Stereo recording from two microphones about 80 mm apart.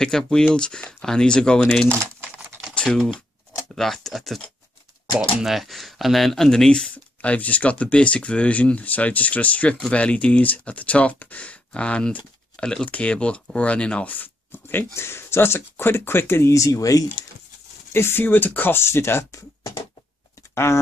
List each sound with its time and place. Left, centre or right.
0.0 s speech: centre
2.7 s typing: centre
3.7 s speech: centre
5.4 s speech: centre; by 17.1 s left
17.9 s speech: left
20.5 s speech: left